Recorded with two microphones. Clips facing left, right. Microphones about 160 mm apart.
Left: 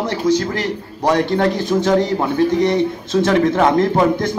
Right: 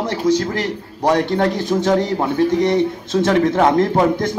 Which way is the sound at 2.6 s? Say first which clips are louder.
Even; 45° right (ahead or behind).